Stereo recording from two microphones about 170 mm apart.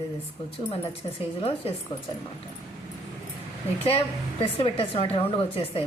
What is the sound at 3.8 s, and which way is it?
A woman's voice, 35° left (ahead or behind).